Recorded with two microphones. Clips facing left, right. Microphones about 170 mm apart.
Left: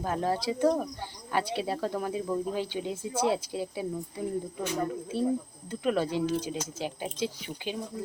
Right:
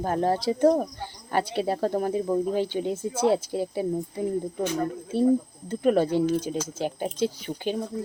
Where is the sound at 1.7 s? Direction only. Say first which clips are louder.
Right 6 dB; 40° right (ahead or behind).